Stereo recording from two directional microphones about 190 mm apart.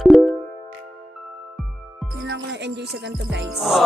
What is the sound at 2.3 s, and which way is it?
Music, 65° right (ahead or behind).